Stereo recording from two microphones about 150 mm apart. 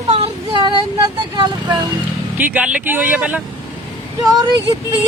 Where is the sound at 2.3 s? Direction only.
10° right (ahead or behind).